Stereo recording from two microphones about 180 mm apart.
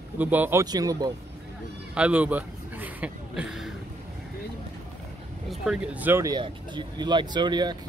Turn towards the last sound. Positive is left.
turn(degrees=-25)  # may be behind; listen again after turning